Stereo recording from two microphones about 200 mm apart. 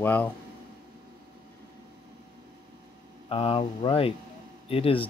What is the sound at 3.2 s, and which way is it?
Speech, 25° left (ahead or behind).